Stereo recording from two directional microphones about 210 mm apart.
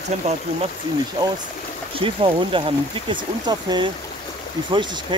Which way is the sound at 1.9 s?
25° right (ahead or behind).